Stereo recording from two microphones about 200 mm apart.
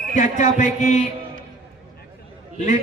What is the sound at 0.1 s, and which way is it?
Speech, 40° left (ahead or behind).